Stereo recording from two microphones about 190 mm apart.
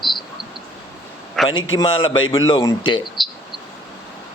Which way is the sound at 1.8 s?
25° left (ahead or behind).